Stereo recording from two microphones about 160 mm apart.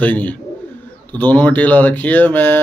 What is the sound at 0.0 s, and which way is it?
Speech, 10° left (ahead or behind).